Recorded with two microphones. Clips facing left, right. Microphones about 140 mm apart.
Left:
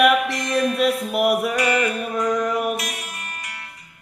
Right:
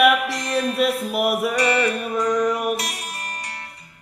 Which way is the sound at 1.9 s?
Centre (ahead or behind).